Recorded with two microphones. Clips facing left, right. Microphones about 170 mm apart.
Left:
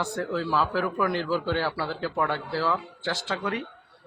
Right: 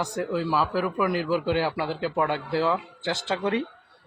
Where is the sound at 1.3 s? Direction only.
15° right (ahead or behind).